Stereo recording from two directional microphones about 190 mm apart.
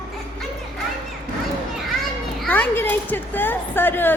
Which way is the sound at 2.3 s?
10° left (ahead or behind).